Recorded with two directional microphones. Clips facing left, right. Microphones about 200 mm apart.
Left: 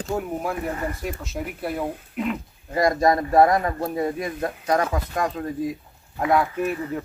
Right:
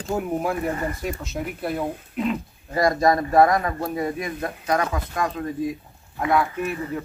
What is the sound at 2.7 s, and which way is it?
Speech, 20° left (ahead or behind).